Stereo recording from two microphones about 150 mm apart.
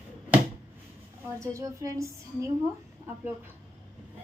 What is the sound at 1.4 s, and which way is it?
Speech, 20° right (ahead or behind).